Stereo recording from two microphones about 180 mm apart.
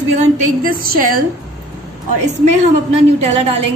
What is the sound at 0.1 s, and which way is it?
A woman's voice, 45° right (ahead or behind).